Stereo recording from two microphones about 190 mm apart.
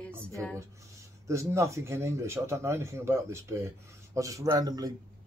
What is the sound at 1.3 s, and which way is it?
A man's voice, 15° right (ahead or behind).